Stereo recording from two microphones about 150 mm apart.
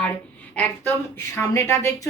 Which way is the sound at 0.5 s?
10° left (ahead or behind).